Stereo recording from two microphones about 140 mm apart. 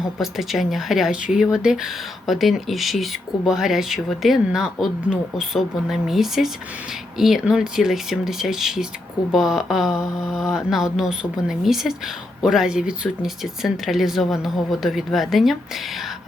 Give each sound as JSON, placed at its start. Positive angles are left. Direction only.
{"t": 0.2, "sound": "speech", "side_deg": 0}